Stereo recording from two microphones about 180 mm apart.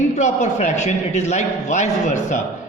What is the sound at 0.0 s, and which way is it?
A man's voice, 40° left (ahead or behind).